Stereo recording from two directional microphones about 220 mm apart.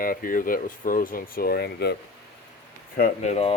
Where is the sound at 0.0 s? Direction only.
40° left (ahead or behind).